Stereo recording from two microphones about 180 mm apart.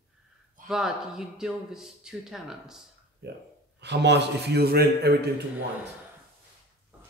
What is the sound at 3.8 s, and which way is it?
A man's voice, 70° right (ahead or behind).